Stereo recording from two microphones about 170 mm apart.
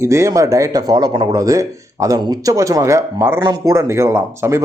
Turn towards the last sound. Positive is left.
turn(degrees=-15)  # may be behind; listen again after turning